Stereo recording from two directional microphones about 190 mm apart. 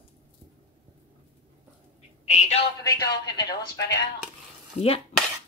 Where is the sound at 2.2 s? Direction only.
35° left (ahead or behind).